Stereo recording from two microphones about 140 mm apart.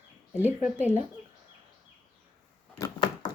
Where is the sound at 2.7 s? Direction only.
30° left (ahead or behind).